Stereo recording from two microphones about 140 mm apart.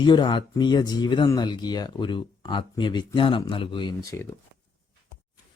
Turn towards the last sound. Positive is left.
turn(degrees=25)  # may be behind; listen again after turning